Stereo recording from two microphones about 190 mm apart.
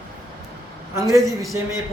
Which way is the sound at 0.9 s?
15° right (ahead or behind).